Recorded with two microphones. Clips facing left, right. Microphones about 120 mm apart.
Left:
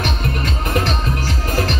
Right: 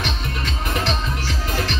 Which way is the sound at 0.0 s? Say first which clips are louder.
Left 5 dB; 45° left (ahead or behind).